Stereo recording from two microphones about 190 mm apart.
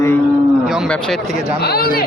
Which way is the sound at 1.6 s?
55° left (ahead or behind).